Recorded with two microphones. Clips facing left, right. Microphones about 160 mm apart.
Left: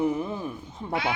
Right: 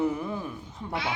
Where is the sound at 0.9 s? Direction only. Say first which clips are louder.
Left 4 dB; 50° left (ahead or behind).